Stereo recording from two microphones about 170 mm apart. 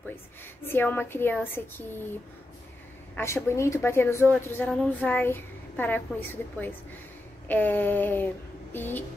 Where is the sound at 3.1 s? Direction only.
15° left (ahead or behind).